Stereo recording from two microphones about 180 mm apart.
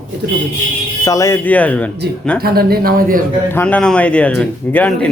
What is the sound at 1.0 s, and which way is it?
Speech, 15° left (ahead or behind).